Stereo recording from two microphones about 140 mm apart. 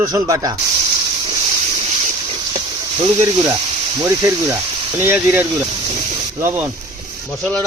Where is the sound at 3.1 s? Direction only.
30° right (ahead or behind).